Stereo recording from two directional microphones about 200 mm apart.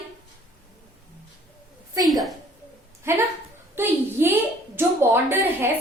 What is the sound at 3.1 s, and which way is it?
A woman's voice, 15° right (ahead or behind).